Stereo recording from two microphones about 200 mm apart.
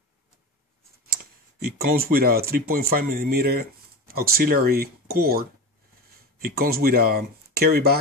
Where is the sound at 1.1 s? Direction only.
50° right (ahead or behind).